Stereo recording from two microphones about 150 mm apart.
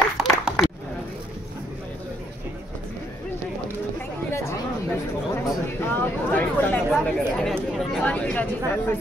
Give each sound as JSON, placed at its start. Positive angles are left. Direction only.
{"t": 0.2, "sound": "a sound", "side_deg": 0}
{"t": 4.3, "sound": "chatter", "side_deg": 20}
{"t": 5.3, "sound": "speech", "side_deg": 15}